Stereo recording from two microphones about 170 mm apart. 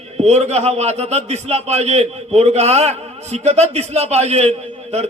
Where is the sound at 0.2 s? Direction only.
40° right (ahead or behind).